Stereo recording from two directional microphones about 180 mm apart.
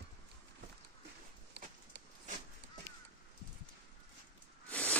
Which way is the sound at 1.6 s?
70° right (ahead or behind).